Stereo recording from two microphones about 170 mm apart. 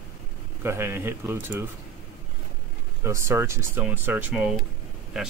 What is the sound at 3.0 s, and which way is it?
Speech, 15° right (ahead or behind).